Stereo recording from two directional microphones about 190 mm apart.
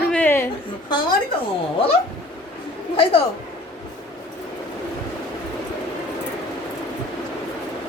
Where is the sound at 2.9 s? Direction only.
30° left (ahead or behind).